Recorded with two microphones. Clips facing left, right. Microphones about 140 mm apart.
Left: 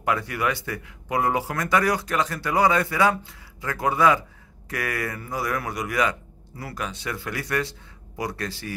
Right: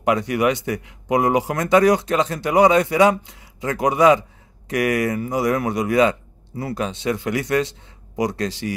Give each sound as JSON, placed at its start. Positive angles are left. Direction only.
{"t": 0.0, "sound": "speech", "side_deg": -20}